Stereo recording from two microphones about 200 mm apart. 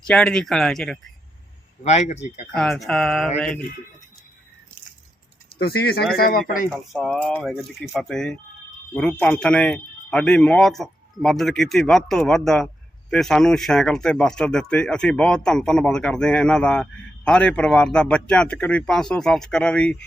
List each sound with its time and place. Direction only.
0.1 s speech: 5° left (ahead or behind)
1.8 s speech: 35° left (ahead or behind)
2.6 s speech: centre (ahead or behind)
5.5 s speech: 50° left (ahead or behind)
6.7 s speech: centre (ahead or behind)